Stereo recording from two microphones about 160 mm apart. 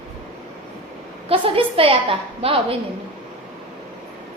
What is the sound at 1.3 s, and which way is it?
A woman's voice, 35° right (ahead or behind).